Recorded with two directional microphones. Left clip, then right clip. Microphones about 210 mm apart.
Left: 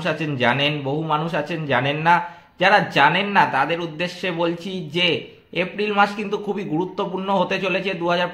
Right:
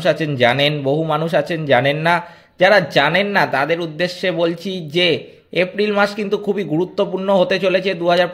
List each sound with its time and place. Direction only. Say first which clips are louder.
0.0 s a man's voice: right 6 dB; 25° right (ahead or behind)